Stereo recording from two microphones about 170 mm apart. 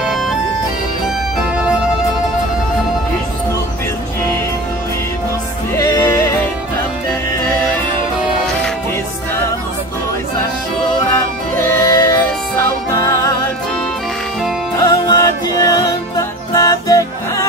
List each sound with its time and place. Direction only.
5.8 s music: 20° left (ahead or behind)
11.5 s music: 15° left (ahead or behind)
14.8 s music: 20° left (ahead or behind)